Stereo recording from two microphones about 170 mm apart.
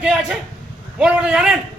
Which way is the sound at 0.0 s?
5° right (ahead or behind).